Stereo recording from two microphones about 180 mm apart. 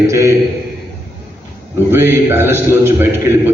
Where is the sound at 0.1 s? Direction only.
15° right (ahead or behind).